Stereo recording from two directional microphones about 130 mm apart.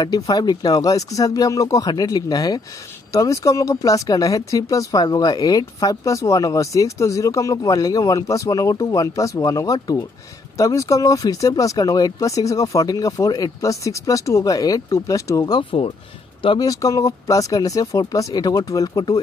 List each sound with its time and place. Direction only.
0.0 s speech: 30° left (ahead or behind)